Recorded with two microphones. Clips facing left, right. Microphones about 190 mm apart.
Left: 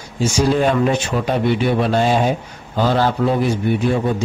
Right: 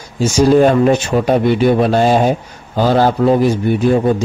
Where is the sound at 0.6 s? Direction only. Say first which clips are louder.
Right 6 dB; 45° right (ahead or behind).